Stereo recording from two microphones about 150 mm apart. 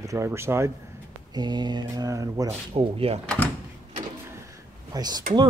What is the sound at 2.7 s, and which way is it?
Speech, 40° right (ahead or behind).